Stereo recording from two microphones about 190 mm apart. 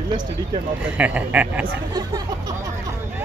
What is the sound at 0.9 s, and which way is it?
Speech, 10° right (ahead or behind).